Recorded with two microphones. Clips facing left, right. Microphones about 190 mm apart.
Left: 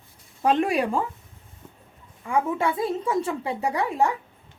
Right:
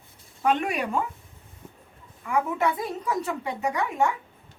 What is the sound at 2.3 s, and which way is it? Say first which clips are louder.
A woman's voice: left 1 dB; 25° left (ahead or behind).